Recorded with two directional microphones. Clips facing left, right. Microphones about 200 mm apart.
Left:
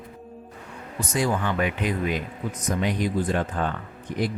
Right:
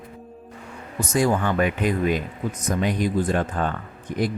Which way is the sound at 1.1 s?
45° right (ahead or behind).